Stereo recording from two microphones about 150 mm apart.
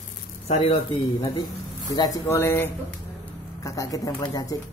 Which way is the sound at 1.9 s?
25° left (ahead or behind).